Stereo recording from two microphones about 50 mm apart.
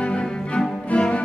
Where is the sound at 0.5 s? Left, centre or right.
Left.